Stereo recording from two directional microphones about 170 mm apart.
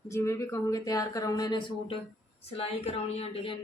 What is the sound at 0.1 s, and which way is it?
Speech, 15° left (ahead or behind).